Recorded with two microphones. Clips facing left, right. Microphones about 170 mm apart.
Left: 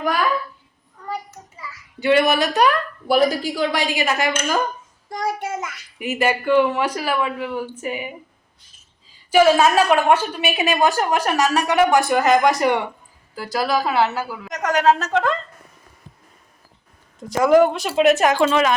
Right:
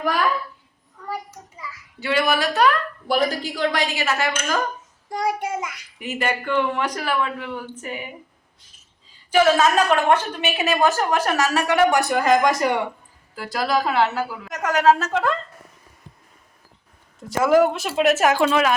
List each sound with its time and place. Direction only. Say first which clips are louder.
2.0 s speech: left 5 dB; 20° left (ahead or behind)
2.6 s a woman's voice: left 1 dB; 10° left (ahead or behind)
5.0 s a woman's voice: right 1 dB; 10° right (ahead or behind)
6.0 s a woman's voice: left 4 dB; 10° left (ahead or behind)
9.3 s a woman's voice: left 2 dB; 10° left (ahead or behind)
13.3 s a woman's voice: left 1 dB; centre (ahead or behind)
17.2 s speech: left 2 dB; centre (ahead or behind)